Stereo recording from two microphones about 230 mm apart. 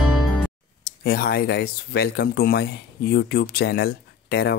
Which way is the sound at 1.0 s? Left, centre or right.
Left.